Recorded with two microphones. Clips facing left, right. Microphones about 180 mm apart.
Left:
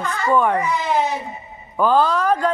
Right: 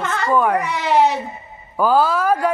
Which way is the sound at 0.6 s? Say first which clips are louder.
Right 3 dB; 75° right (ahead or behind).